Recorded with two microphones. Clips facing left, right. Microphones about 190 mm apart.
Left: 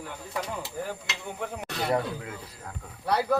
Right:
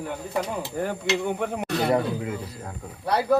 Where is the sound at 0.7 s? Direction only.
65° right (ahead or behind).